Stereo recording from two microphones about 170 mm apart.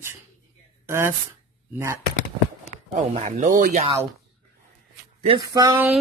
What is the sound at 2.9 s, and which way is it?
Speech, 45° right (ahead or behind).